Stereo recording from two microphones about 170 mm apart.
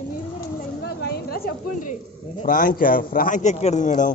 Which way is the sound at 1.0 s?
65° left (ahead or behind).